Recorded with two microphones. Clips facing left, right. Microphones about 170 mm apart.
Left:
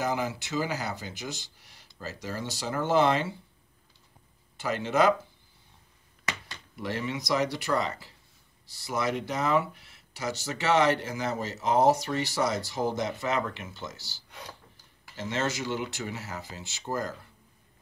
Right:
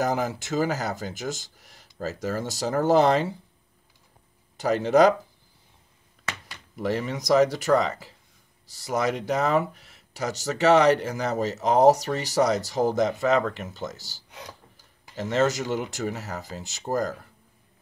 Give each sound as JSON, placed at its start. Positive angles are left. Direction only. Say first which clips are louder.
{"t": 0.0, "sound": "speech", "louder": "right 4 dB", "side_deg": -40}
{"t": 4.6, "sound": "speech", "louder": "right 7 dB", "side_deg": -40}
{"t": 6.8, "sound": "speech", "louder": "right 5 dB", "side_deg": -40}